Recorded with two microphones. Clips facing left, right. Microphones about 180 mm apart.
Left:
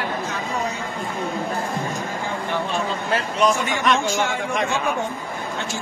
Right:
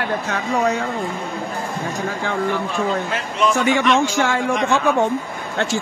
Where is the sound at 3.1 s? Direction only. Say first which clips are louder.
Left 1 dB; 40° left (ahead or behind).